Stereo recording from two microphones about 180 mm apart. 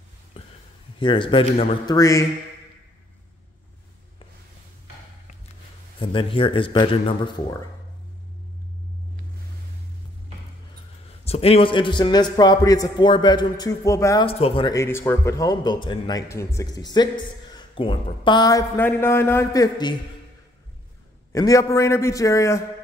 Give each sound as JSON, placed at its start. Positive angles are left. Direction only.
{"t": 0.9, "sound": "a man's voice", "side_deg": 30}
{"t": 2.0, "sound": "a man's voice", "side_deg": 15}
{"t": 5.9, "sound": "a man's voice", "side_deg": 30}
{"t": 11.2, "sound": "a man's voice", "side_deg": 35}
{"t": 14.2, "sound": "speech", "side_deg": 30}
{"t": 14.7, "sound": "a man's voice", "side_deg": 15}
{"t": 21.3, "sound": "a man's voice", "side_deg": 20}